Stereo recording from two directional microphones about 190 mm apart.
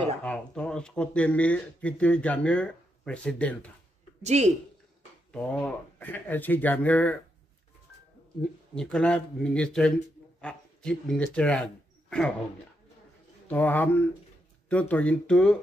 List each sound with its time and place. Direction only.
0.2 s speech: 5° left (ahead or behind)
4.2 s a woman's voice: 35° right (ahead or behind)
5.3 s speech: 5° left (ahead or behind)
8.4 s speech: 5° left (ahead or behind)
13.5 s speech: 10° left (ahead or behind)